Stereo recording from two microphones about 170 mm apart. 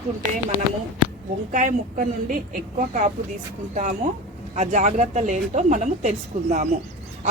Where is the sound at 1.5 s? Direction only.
50° right (ahead or behind).